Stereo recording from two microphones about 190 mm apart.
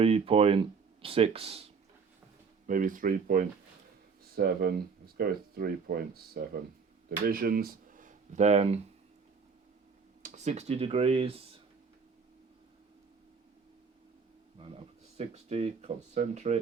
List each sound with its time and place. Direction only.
0.0 s speech: 30° right (ahead or behind)
2.6 s speech: 45° right (ahead or behind)
10.2 s speech: 35° right (ahead or behind)
14.6 s speech: 35° right (ahead or behind)